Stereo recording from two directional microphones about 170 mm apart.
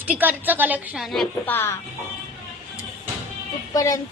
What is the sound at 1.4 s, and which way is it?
Speech, 15° left (ahead or behind).